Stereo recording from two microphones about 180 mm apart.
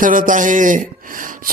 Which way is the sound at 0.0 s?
50° right (ahead or behind).